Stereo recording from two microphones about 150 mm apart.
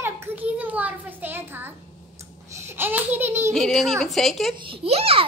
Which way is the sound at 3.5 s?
5° left (ahead or behind).